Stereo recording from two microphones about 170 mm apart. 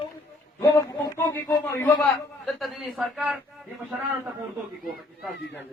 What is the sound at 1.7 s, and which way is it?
Speech, 10° left (ahead or behind).